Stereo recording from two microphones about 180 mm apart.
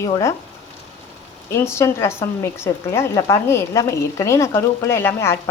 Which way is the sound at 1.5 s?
15° left (ahead or behind).